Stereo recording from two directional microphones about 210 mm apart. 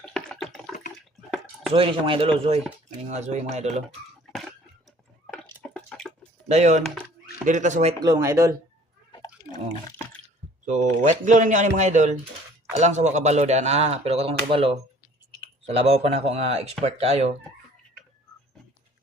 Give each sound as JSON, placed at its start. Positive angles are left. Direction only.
{"t": 0.0, "sound": "water", "side_deg": 5}
{"t": 1.7, "sound": "speech", "side_deg": -25}
{"t": 5.7, "sound": "drip", "side_deg": 0}
{"t": 6.5, "sound": "speech", "side_deg": -35}
{"t": 6.8, "sound": "music", "side_deg": -5}
{"t": 7.4, "sound": "speech", "side_deg": -35}
{"t": 8.0, "sound": "speech", "side_deg": -15}
{"t": 9.1, "sound": "water", "side_deg": 20}
{"t": 10.7, "sound": "speech", "side_deg": -35}